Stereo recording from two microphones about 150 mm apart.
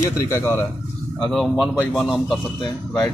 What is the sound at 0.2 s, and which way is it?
Speech, 15° left (ahead or behind).